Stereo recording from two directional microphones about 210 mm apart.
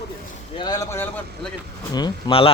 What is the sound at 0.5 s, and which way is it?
Speech, 20° left (ahead or behind).